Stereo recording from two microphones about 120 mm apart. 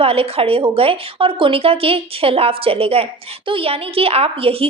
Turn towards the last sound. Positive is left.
turn(degrees=-50)  # may be behind; listen again after turning